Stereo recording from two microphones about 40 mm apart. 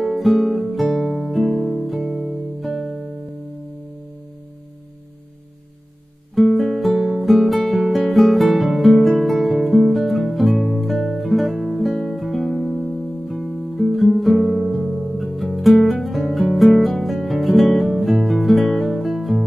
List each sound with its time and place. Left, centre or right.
0.0 s music: centre
6.5 s music: centre
16.4 s music: centre